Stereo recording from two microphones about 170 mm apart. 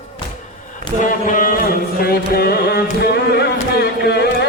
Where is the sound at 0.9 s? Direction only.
25° left (ahead or behind).